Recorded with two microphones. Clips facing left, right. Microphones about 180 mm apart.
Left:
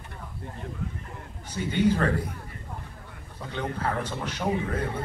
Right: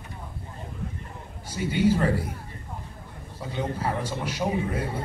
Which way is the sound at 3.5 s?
10° right (ahead or behind).